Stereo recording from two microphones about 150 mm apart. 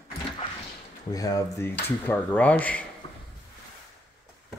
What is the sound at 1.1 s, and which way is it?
Speech, 25° left (ahead or behind).